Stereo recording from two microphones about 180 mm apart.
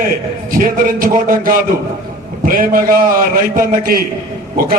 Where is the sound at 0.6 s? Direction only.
50° right (ahead or behind).